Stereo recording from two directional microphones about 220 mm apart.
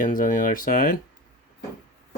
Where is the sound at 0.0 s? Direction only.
35° left (ahead or behind).